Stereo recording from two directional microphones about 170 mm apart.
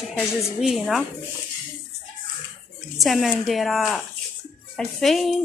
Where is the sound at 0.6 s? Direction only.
5° right (ahead or behind).